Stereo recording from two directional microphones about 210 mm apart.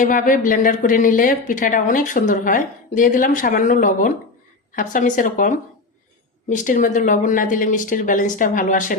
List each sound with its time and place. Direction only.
0.0 s a woman's voice: 40° left (ahead or behind)